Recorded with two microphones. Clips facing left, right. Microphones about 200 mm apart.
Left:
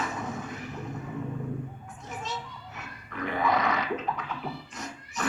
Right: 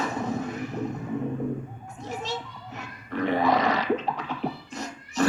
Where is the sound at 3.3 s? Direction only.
30° right (ahead or behind).